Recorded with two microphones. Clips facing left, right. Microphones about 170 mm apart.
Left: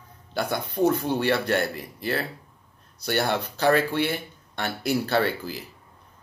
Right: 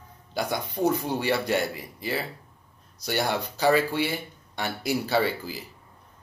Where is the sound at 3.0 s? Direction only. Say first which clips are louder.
Left 2 dB; 10° right (ahead or behind).